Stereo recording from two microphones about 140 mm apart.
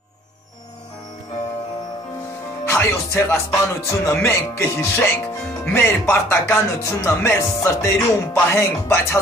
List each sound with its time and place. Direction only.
2.6 s speech: 20° left (ahead or behind)